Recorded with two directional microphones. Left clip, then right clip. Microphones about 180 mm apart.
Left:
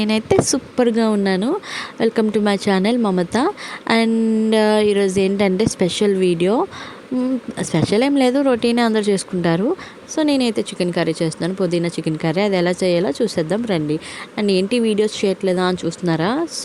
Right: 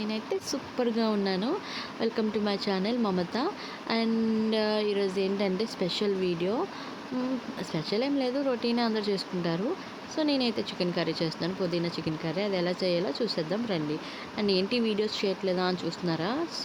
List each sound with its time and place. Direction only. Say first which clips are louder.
0.0 s speech: left 15 dB; 55° left (ahead or behind)